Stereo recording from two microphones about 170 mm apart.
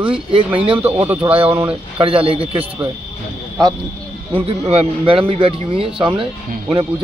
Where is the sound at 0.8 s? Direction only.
10° right (ahead or behind).